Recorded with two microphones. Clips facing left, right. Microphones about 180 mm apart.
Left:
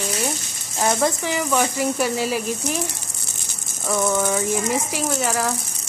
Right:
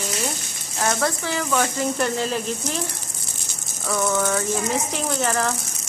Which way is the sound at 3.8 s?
15° left (ahead or behind).